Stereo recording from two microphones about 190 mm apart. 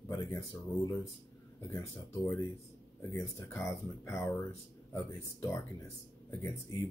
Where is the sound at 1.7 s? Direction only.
15° left (ahead or behind).